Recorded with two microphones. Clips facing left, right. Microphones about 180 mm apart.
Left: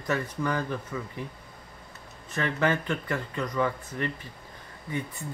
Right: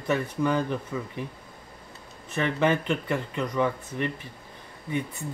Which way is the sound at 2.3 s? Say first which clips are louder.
Right 2 dB; 20° right (ahead or behind).